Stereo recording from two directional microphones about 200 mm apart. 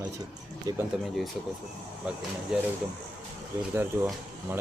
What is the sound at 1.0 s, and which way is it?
Speech, centre (ahead or behind).